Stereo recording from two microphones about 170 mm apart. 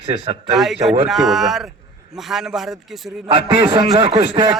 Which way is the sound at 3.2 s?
25° right (ahead or behind).